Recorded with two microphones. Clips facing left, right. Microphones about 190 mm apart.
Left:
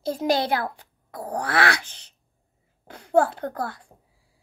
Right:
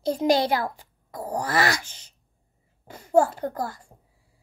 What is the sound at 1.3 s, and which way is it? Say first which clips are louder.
A child's voice: left 1 dB; 10° right (ahead or behind).